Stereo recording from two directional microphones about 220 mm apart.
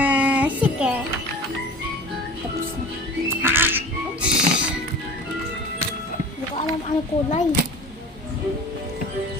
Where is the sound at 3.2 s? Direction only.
10° right (ahead or behind).